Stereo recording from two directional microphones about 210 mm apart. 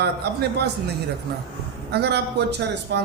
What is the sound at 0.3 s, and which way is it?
Speech, 50° right (ahead or behind).